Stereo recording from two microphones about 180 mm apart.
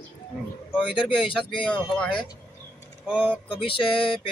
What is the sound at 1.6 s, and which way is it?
Speech, 5° left (ahead or behind).